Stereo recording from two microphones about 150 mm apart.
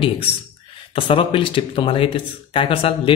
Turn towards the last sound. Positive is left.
turn(degrees=40)  # may be behind; listen again after turning